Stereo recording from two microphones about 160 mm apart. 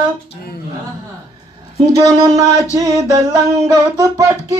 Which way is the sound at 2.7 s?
20° right (ahead or behind).